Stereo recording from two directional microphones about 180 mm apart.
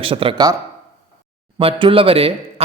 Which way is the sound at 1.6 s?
30° right (ahead or behind).